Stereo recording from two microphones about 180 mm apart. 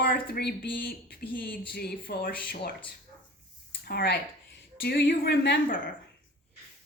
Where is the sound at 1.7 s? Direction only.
60° left (ahead or behind).